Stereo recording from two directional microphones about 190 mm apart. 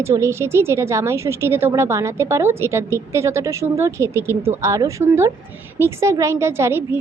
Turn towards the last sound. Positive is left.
turn(degrees=-15)  # may be behind; listen again after turning